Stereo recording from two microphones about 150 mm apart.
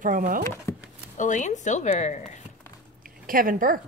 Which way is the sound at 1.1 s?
55° left (ahead or behind).